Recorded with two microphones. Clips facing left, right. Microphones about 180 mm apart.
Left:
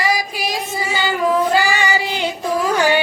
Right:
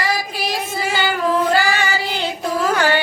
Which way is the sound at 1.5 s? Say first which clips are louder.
Left 1 dB; 15° left (ahead or behind).